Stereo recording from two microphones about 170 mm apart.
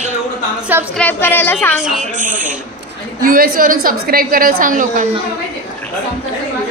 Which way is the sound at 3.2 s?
60° right (ahead or behind).